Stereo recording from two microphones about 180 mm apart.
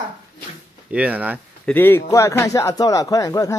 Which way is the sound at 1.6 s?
10° left (ahead or behind).